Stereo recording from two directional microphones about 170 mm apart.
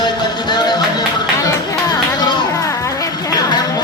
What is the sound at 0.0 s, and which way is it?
Music, 25° left (ahead or behind).